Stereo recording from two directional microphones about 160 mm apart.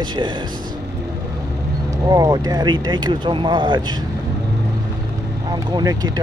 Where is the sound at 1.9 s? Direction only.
20° right (ahead or behind).